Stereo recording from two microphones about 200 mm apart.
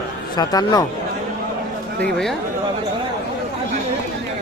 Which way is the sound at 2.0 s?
Centre (ahead or behind).